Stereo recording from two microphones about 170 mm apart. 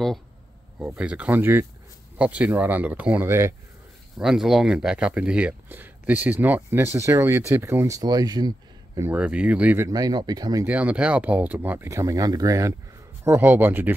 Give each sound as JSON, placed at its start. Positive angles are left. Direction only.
{"t": 0.7, "sound": "speech", "side_deg": -10}
{"t": 4.2, "sound": "speech", "side_deg": 0}
{"t": 9.1, "sound": "speech", "side_deg": -5}
{"t": 9.8, "sound": "speech", "side_deg": -20}
{"t": 10.7, "sound": "speech", "side_deg": -10}